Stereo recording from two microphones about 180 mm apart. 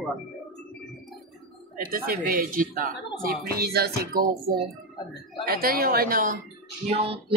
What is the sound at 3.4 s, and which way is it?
Music, 60° right (ahead or behind).